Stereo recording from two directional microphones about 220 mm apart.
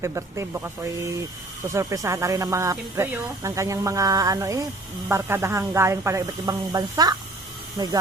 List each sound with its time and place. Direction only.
0.0 s speech: 15° right (ahead or behind)